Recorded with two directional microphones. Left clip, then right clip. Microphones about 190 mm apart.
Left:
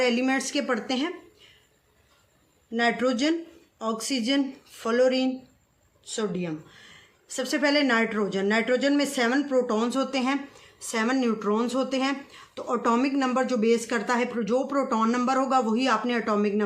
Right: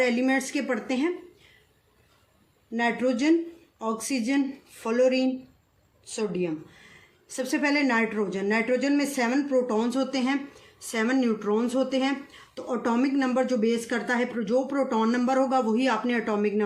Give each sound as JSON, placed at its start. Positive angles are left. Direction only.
{"t": 0.0, "sound": "speech", "side_deg": 35}
{"t": 2.7, "sound": "speech", "side_deg": 30}
{"t": 7.3, "sound": "speech", "side_deg": 30}